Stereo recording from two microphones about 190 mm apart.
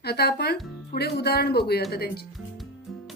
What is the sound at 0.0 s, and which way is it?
Speech, 55° left (ahead or behind).